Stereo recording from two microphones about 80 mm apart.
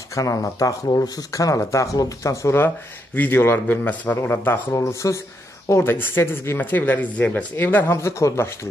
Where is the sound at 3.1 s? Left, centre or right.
Left.